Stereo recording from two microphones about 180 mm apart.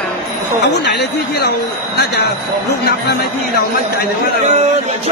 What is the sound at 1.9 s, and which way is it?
Speech, 65° left (ahead or behind).